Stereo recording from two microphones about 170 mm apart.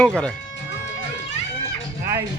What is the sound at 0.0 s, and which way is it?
Speech, 5° left (ahead or behind).